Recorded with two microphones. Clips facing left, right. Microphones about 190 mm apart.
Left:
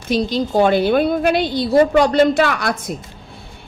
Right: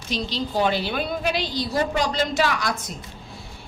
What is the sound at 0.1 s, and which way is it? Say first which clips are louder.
A woman's voice: left 9 dB; 50° left (ahead or behind).